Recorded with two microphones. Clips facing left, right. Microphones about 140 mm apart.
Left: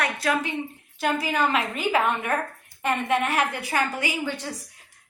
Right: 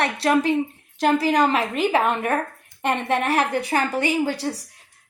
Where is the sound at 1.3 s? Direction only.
40° right (ahead or behind).